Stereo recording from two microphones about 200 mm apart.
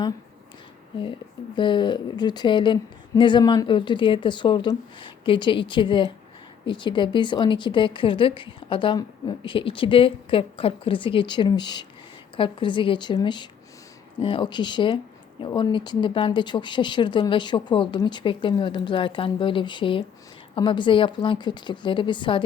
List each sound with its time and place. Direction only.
1.5 s speech: 25° left (ahead or behind)